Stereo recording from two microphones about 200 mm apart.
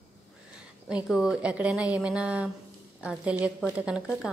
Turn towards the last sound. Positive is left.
turn(degrees=-5)  # may be behind; listen again after turning